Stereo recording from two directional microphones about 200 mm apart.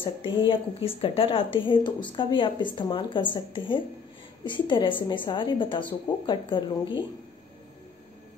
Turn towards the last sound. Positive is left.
turn(degrees=25)  # may be behind; listen again after turning